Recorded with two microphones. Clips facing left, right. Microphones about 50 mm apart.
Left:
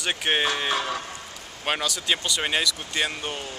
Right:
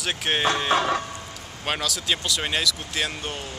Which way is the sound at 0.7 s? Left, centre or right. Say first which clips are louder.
Right 5 dB; right.